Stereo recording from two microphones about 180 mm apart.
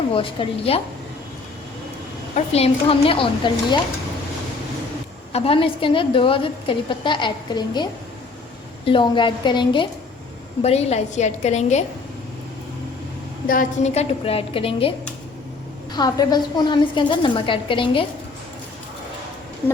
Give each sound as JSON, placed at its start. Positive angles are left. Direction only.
{"t": 0.1, "sound": "a woman's voice", "side_deg": 30}
{"t": 2.3, "sound": "a woman's voice", "side_deg": 35}
{"t": 5.3, "sound": "a woman's voice", "side_deg": 30}
{"t": 13.5, "sound": "a woman's voice", "side_deg": 45}